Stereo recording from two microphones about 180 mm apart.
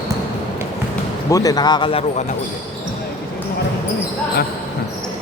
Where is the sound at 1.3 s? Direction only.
20° left (ahead or behind).